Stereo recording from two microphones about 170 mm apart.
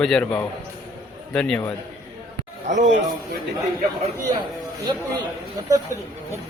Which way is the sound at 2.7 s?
45° right (ahead or behind).